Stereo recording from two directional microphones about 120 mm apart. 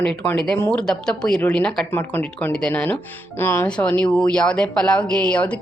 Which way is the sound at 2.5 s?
10° left (ahead or behind).